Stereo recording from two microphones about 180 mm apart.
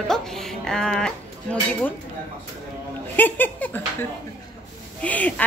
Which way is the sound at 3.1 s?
10° left (ahead or behind).